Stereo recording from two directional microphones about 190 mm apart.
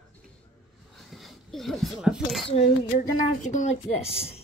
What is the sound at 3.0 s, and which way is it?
A woman's voice, 40° left (ahead or behind).